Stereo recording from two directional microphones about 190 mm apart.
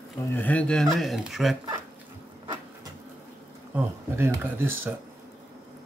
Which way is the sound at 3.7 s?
10° right (ahead or behind).